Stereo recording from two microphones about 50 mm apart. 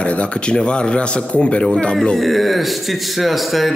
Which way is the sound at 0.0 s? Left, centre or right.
Left.